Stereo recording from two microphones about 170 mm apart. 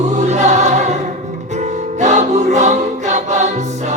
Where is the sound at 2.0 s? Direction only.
45° right (ahead or behind).